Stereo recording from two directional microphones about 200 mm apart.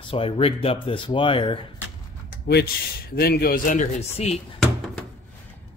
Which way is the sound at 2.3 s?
55° left (ahead or behind).